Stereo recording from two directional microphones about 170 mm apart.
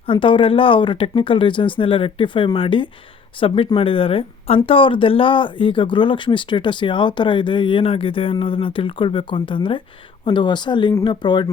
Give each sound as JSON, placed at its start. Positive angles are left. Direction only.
{"t": 0.1, "sound": "speech", "side_deg": 30}